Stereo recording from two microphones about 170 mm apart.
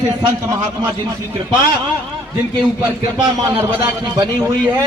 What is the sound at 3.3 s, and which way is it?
A man's voice, 25° right (ahead or behind).